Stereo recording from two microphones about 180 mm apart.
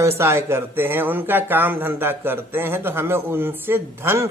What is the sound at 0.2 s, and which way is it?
Speech, 15° right (ahead or behind).